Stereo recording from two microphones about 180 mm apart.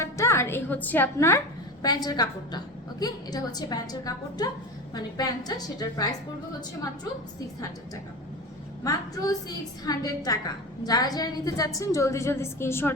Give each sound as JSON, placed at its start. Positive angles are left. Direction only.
{"t": 0.0, "sound": "a woman's voice", "side_deg": 15}
{"t": 8.8, "sound": "a woman's voice", "side_deg": 20}